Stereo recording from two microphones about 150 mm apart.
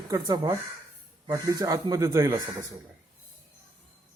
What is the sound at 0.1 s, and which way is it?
Speech, 25° right (ahead or behind).